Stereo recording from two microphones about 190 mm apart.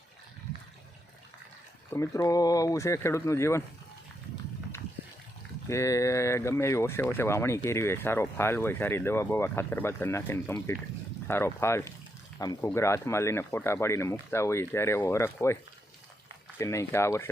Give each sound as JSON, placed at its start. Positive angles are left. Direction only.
{"t": 1.9, "sound": "speech", "side_deg": 15}
{"t": 5.6, "sound": "speech", "side_deg": 15}
{"t": 16.6, "sound": "speech", "side_deg": 15}